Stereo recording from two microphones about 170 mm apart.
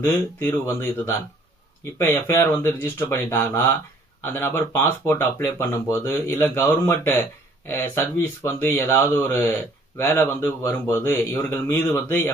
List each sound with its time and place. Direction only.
0.0 s speech: 15° left (ahead or behind)